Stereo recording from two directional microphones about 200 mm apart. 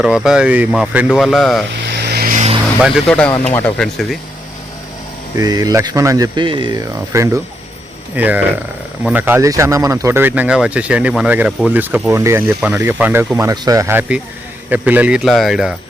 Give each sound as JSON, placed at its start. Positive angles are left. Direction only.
{"t": 0.0, "sound": "speech", "side_deg": -5}
{"t": 1.9, "sound": "a sound", "side_deg": -55}
{"t": 2.8, "sound": "speech", "side_deg": 0}
{"t": 5.4, "sound": "speech", "side_deg": -20}